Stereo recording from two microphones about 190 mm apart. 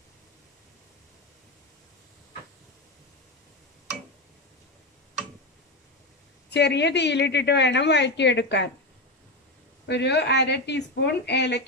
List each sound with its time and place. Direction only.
6.5 s a woman's voice: 65° left (ahead or behind)
9.8 s a woman's voice: 65° left (ahead or behind)